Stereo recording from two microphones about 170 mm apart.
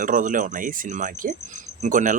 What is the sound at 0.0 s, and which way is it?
A man's voice, 50° right (ahead or behind).